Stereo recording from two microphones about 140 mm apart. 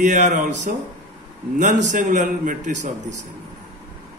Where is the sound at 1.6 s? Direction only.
60° right (ahead or behind).